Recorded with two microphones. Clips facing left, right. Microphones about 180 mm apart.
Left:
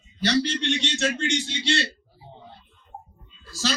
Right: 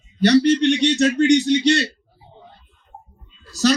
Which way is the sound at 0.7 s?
15° right (ahead or behind).